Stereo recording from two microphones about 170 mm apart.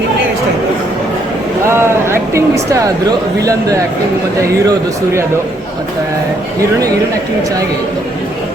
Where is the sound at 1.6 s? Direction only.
15° right (ahead or behind).